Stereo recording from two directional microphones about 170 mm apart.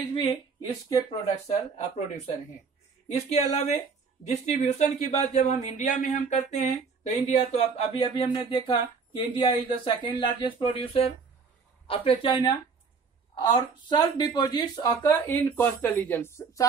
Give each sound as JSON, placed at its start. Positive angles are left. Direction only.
{"t": 0.1, "sound": "speech", "side_deg": 30}
{"t": 3.3, "sound": "a woman's voice", "side_deg": 40}